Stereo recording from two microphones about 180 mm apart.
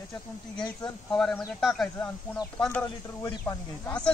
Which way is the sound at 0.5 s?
25° left (ahead or behind).